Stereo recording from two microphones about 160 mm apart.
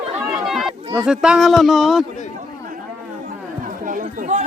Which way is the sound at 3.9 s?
50° right (ahead or behind).